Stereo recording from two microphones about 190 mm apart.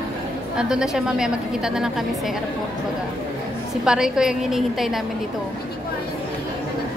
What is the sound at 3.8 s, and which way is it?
A woman's voice, 5° right (ahead or behind).